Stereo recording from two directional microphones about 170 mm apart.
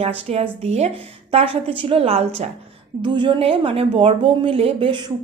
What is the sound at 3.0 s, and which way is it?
A woman's voice, 25° right (ahead or behind).